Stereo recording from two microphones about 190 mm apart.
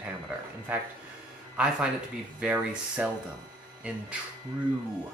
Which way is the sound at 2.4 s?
5° right (ahead or behind).